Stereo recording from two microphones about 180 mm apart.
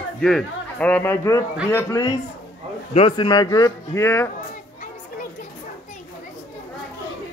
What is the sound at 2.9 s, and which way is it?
A man's voice, 30° left (ahead or behind).